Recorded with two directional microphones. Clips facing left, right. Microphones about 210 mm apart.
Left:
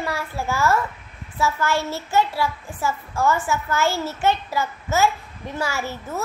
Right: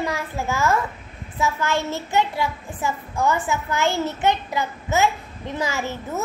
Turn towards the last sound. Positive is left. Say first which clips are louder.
# right 1 dB
turn(degrees=-20)  # may be behind; listen again after turning